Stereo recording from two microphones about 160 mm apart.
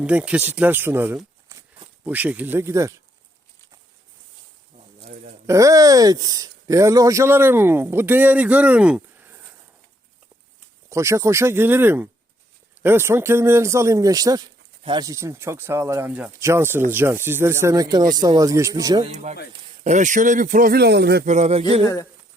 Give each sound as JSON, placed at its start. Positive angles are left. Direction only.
{"t": 0.0, "sound": "speech", "side_deg": -10}
{"t": 5.5, "sound": "speech", "side_deg": -20}
{"t": 10.8, "sound": "speech", "side_deg": -20}
{"t": 19.0, "sound": "speech", "side_deg": -45}
{"t": 21.2, "sound": "speech", "side_deg": -45}